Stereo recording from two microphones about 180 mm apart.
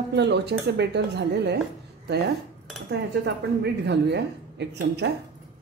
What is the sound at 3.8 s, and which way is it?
A woman's voice, 70° right (ahead or behind).